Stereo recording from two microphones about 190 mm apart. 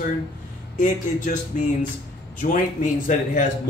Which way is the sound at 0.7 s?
45° left (ahead or behind).